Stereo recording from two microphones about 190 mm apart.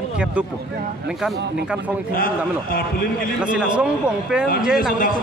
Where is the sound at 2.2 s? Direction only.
50° left (ahead or behind).